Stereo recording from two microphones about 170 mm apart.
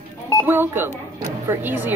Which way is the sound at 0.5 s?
15° right (ahead or behind).